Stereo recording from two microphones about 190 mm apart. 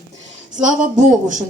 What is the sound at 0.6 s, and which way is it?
Speech, 40° right (ahead or behind).